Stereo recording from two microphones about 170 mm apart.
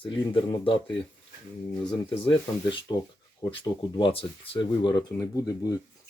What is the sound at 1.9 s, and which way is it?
Speech, 30° left (ahead or behind).